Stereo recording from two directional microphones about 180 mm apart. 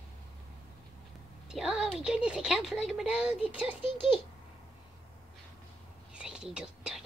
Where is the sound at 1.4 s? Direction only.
5° right (ahead or behind).